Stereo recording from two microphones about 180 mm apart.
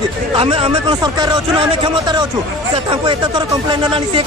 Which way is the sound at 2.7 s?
30° right (ahead or behind).